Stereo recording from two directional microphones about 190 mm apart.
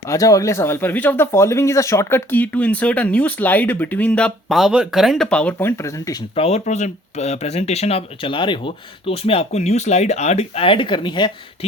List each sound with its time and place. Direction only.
0.1 s speech: 15° left (ahead or behind)
6.3 s speech: 35° left (ahead or behind)